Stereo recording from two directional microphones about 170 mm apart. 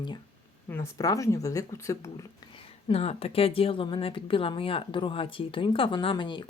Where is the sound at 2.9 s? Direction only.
35° left (ahead or behind).